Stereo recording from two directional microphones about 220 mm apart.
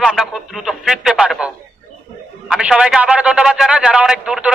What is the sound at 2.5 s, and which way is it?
A man's voice, 5° right (ahead or behind).